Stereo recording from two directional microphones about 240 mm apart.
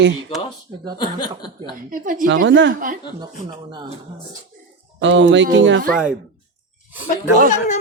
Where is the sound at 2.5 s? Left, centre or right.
Right.